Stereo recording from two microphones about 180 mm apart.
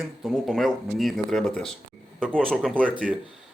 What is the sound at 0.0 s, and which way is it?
Speech, centre (ahead or behind).